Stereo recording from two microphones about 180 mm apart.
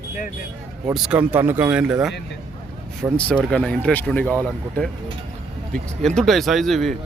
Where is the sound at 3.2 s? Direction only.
5° left (ahead or behind).